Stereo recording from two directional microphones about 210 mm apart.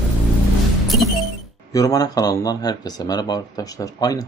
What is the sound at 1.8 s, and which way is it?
Speech, 15° left (ahead or behind).